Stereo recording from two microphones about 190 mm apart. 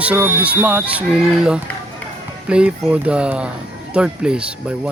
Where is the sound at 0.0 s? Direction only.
10° right (ahead or behind).